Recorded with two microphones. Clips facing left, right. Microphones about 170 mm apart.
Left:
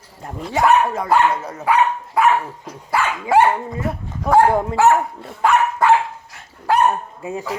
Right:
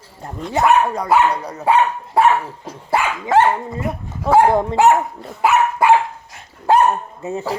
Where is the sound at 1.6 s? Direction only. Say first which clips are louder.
Right 1 dB; 25° right (ahead or behind).